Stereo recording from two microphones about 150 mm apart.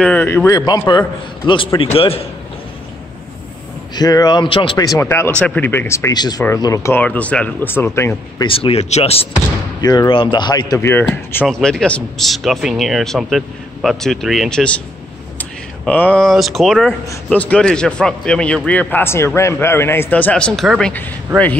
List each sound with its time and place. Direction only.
0.0 s a man's voice: 10° left (ahead or behind); by 2.2 s 40° left (ahead or behind)
3.9 s a man's voice: 25° left (ahead or behind)
7.0 s a man's voice: 10° left (ahead or behind)
8.5 s speech: 40° left (ahead or behind)
9.8 s a man's voice: 25° left (ahead or behind)
11.4 s a man's voice: 5° left (ahead or behind)